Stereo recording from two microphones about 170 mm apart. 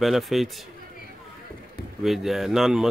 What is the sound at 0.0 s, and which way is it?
Speech, centre (ahead or behind).